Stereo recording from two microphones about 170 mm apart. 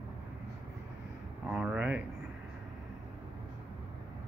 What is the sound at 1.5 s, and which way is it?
Speech, 5° right (ahead or behind).